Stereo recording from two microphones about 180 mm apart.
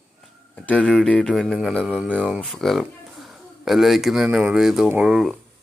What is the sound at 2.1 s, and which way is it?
Speech, 5° right (ahead or behind).